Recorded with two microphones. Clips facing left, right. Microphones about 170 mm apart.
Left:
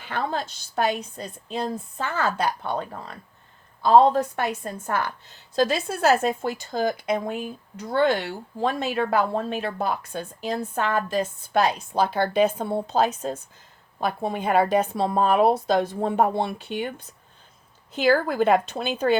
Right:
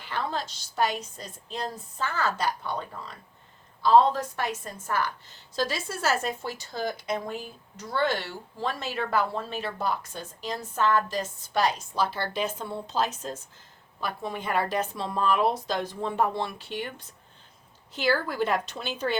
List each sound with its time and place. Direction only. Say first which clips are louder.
0.0 s a woman's voice: left 4 dB; 55° left (ahead or behind)
18.1 s speech: left 7 dB; 50° left (ahead or behind)